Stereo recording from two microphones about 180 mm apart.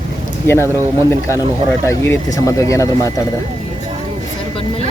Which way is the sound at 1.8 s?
15° left (ahead or behind).